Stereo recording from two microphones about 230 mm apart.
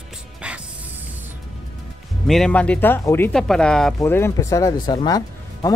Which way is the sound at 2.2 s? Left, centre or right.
Centre.